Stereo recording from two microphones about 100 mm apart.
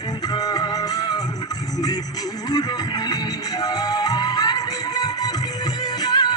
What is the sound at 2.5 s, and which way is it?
Music, 45° left (ahead or behind).